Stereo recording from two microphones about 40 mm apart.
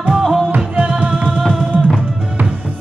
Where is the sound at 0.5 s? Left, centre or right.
Right.